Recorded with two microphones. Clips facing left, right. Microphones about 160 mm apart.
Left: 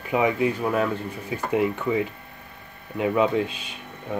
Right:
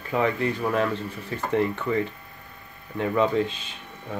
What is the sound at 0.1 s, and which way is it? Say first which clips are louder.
Speech: left 2 dB; 10° left (ahead or behind).